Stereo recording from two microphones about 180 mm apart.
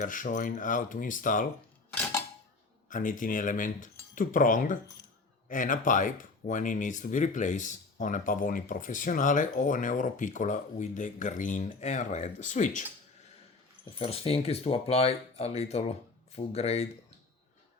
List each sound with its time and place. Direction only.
0.0 s speech: 45° left (ahead or behind)
2.9 s speech: 45° left (ahead or behind)
14.0 s speech: 35° left (ahead or behind)